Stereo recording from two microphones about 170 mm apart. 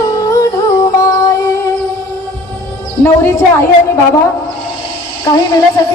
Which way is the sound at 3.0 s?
15° left (ahead or behind).